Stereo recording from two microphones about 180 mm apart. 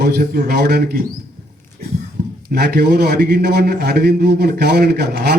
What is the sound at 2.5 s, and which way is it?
A man's voice, 65° right (ahead or behind).